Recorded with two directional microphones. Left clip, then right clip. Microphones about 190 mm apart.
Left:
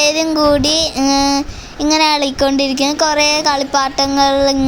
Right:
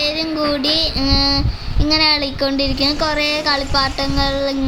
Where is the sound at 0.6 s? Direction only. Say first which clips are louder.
Left 2 dB; centre (ahead or behind).